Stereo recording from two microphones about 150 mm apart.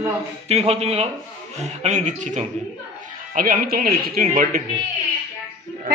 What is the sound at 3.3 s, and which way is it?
Speech, 65° right (ahead or behind).